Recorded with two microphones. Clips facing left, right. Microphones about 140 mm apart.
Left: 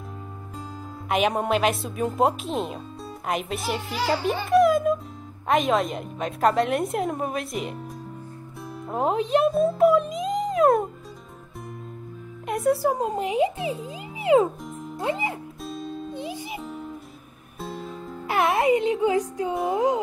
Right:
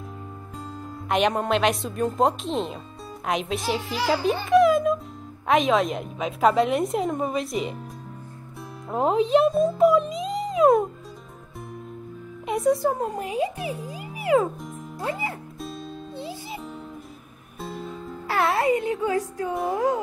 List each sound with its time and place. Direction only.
1.0 s a woman's voice: 5° left (ahead or behind)
8.9 s a woman's voice: centre (ahead or behind)
12.4 s speech: centre (ahead or behind)
13.0 s a child's voice: 20° left (ahead or behind)
15.6 s music: centre (ahead or behind)
16.1 s music: 15° left (ahead or behind)
17.6 s music: centre (ahead or behind)
18.3 s music: 20° left (ahead or behind)
19.6 s a child's voice: 20° left (ahead or behind)